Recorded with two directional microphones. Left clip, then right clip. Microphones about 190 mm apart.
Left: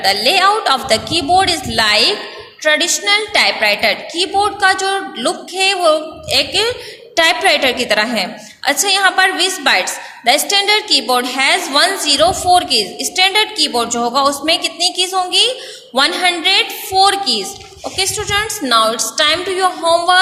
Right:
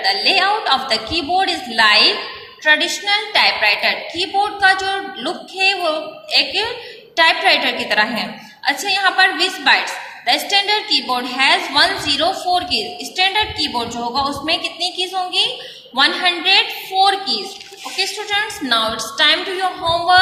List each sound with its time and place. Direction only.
0.0 s a woman's voice: 60° left (ahead or behind)